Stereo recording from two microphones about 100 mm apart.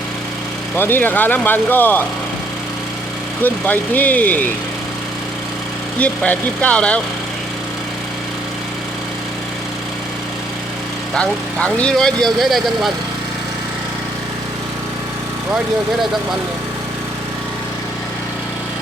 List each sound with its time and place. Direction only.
0.8 s speech: 20° left (ahead or behind)
3.4 s speech: 15° left (ahead or behind)
6.0 s speech: 15° left (ahead or behind)
11.1 s speech: 10° left (ahead or behind)